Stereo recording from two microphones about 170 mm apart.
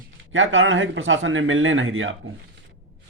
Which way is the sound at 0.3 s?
90° right.